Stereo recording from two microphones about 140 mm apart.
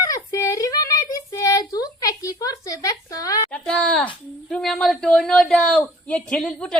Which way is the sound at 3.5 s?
5° left (ahead or behind).